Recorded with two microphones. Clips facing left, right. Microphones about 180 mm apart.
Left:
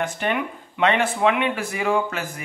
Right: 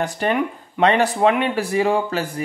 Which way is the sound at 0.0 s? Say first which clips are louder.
Right 4 dB; 35° right (ahead or behind).